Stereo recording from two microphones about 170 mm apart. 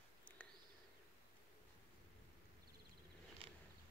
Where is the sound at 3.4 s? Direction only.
30° right (ahead or behind).